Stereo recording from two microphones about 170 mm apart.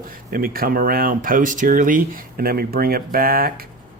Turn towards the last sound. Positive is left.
turn(degrees=-60)  # may be behind; listen again after turning